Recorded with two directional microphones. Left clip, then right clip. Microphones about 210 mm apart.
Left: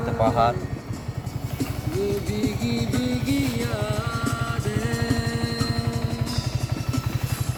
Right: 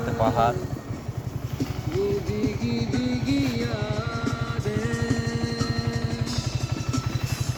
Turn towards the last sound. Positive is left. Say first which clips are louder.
# left 1 dB
turn(degrees=20)  # may be behind; listen again after turning